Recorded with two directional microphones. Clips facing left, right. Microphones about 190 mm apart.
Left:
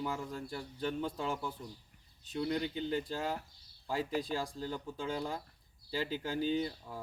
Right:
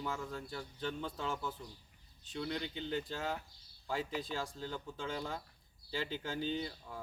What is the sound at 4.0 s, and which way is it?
Speech, 40° left (ahead or behind).